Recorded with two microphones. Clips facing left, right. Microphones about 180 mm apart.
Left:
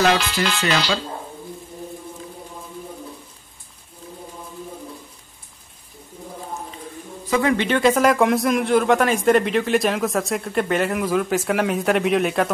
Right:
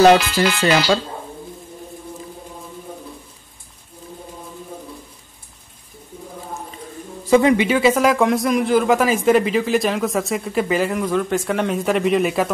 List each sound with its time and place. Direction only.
0.2 s speech: centre (ahead or behind)
7.2 s speech: 25° right (ahead or behind)
7.5 s speech: 5° right (ahead or behind)